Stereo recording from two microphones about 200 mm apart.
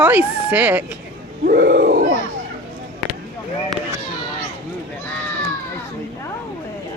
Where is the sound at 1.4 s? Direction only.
45° right (ahead or behind).